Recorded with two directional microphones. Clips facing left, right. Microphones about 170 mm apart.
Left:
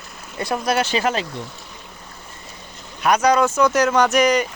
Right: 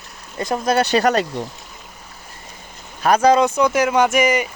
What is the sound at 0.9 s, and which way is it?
Speech, 45° right (ahead or behind).